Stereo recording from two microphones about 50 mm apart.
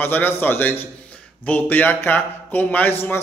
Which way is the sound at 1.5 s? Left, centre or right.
Left.